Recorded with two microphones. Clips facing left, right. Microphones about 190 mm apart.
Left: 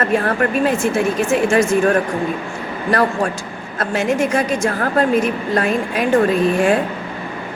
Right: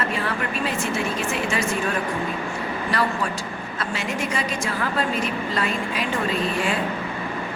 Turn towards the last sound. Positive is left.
turn(degrees=50)  # may be behind; listen again after turning